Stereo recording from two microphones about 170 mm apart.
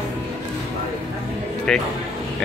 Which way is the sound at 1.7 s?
5° left (ahead or behind).